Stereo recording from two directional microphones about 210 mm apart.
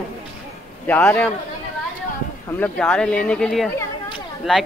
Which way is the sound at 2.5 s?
5° left (ahead or behind).